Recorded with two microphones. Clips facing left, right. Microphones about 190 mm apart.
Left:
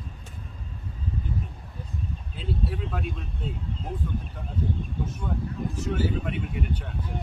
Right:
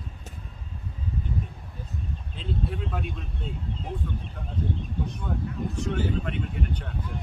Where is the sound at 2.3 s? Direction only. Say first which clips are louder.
Even; centre (ahead or behind).